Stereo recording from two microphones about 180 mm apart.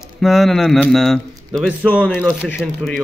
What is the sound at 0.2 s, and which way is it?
Speech, centre (ahead or behind).